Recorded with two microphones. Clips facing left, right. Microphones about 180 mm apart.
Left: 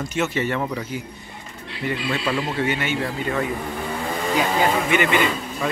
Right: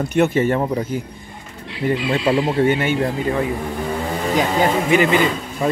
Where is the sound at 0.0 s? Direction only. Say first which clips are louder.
Right 7 dB; 55° right (ahead or behind).